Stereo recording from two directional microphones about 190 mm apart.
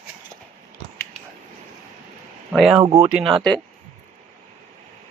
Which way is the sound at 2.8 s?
30° right (ahead or behind).